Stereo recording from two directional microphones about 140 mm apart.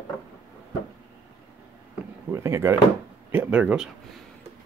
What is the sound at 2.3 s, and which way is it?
Speech, 20° right (ahead or behind).